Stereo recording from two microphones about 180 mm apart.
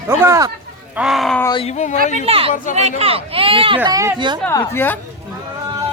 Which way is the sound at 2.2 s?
30° right (ahead or behind).